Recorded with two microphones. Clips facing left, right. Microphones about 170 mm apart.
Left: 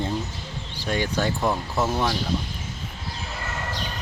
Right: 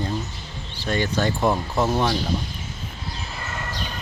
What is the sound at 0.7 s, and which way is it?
Speech, 10° left (ahead or behind).